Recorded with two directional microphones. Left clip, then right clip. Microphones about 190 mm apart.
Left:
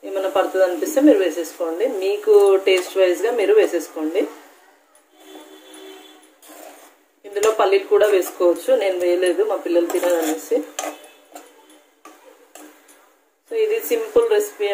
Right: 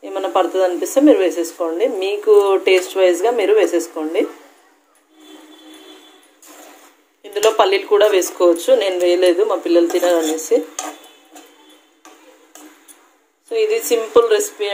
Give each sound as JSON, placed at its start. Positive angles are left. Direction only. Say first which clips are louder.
{"t": 0.0, "sound": "speech", "louder": "right 2 dB", "side_deg": -40}
{"t": 7.5, "sound": "speech", "louder": "right 1 dB", "side_deg": -40}
{"t": 13.5, "sound": "speech", "louder": "right 3 dB", "side_deg": -35}